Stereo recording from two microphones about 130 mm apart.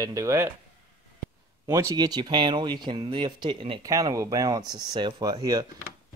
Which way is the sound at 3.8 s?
25° right (ahead or behind).